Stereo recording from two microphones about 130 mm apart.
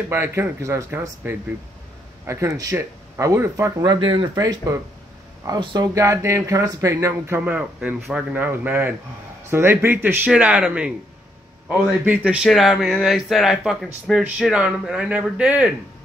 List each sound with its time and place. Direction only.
0.1 s speech: 20° right (ahead or behind)
4.0 s speech: 40° right (ahead or behind)
5.9 s speech: 25° right (ahead or behind)
7.4 s speech: 10° right (ahead or behind)
11.9 s speech: 10° right (ahead or behind)